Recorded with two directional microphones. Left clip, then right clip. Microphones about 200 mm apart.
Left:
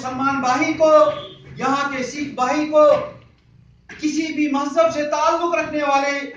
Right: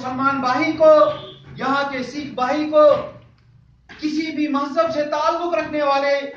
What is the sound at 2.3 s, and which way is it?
Speech, 5° right (ahead or behind).